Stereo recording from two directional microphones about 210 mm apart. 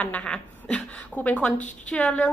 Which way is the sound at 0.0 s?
5° left (ahead or behind).